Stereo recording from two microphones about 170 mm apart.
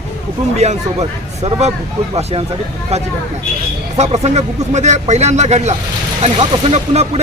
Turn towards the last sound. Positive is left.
turn(degrees=-40)  # may be behind; listen again after turning